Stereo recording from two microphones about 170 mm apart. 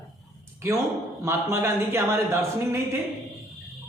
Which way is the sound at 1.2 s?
15° right (ahead or behind).